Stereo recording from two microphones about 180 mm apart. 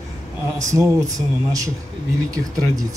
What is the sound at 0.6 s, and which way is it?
Speech, 15° right (ahead or behind).